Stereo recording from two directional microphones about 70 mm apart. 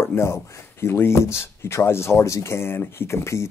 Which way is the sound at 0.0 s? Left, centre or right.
Left.